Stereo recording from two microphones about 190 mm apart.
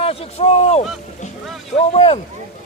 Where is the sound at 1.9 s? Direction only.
30° left (ahead or behind).